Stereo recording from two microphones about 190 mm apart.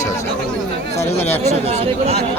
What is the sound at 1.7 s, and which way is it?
Speech, 35° right (ahead or behind).